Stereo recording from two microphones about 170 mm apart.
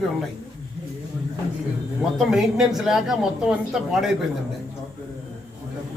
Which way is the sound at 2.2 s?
Centre (ahead or behind).